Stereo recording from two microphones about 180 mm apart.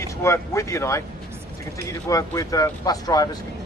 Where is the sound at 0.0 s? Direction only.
15° left (ahead or behind).